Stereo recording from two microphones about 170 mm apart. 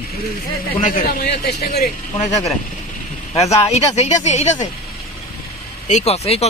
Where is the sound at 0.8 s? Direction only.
50° left (ahead or behind).